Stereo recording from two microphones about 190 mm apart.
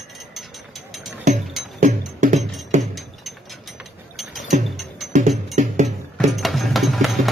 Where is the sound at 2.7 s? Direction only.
40° right (ahead or behind).